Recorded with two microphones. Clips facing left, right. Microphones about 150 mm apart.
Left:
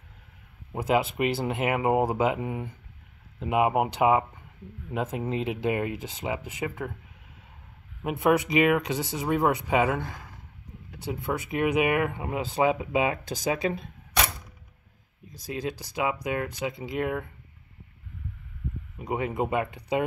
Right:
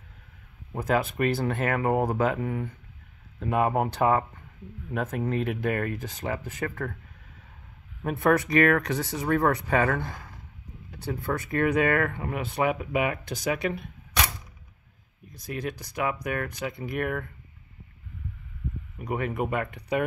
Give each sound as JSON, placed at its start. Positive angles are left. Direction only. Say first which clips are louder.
{"t": 0.7, "sound": "speech", "louder": "left 1 dB", "side_deg": 25}
{"t": 8.0, "sound": "speech", "louder": "even", "side_deg": 10}
{"t": 11.1, "sound": "speech", "louder": "even", "side_deg": 20}
{"t": 15.5, "sound": "speech", "louder": "left 1 dB", "side_deg": 25}
{"t": 18.9, "sound": "speech", "louder": "left 1 dB", "side_deg": 20}